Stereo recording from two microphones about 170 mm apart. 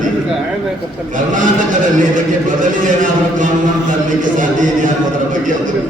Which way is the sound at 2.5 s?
50° right (ahead or behind).